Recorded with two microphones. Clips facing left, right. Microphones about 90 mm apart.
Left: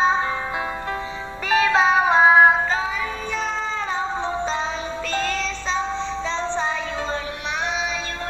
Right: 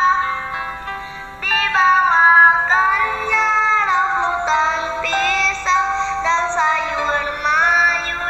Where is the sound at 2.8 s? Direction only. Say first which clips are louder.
Right 9 dB; 70° right (ahead or behind); by 7.2 s 90° right.